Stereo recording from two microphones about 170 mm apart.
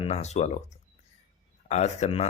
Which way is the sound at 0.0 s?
40° left (ahead or behind).